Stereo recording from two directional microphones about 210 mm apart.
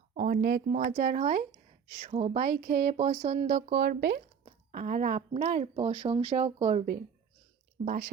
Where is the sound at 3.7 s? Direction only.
50° right (ahead or behind).